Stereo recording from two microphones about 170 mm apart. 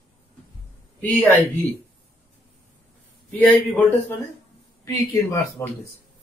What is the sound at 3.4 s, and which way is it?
Speech, 10° left (ahead or behind).